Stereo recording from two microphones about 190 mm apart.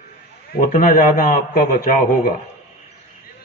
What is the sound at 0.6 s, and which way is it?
Speech, 50° left (ahead or behind).